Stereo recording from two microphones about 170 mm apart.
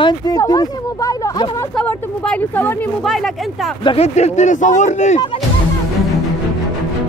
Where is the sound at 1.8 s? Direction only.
10° left (ahead or behind).